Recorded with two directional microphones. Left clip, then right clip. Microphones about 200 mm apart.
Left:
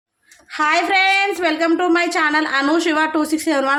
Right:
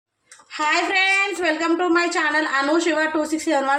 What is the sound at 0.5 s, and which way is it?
A woman's voice, 55° left (ahead or behind).